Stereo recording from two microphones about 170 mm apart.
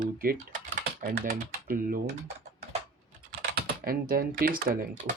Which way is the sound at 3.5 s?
60° right (ahead or behind).